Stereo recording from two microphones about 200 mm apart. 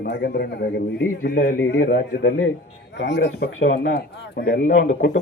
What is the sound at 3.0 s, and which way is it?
Speech, 60° left (ahead or behind).